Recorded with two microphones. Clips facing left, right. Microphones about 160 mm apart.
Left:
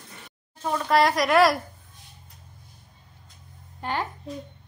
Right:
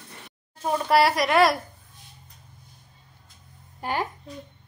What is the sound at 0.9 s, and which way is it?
Speech, 5° right (ahead or behind).